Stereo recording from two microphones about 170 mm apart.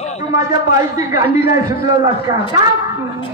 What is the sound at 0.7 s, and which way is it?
Speech, 20° right (ahead or behind).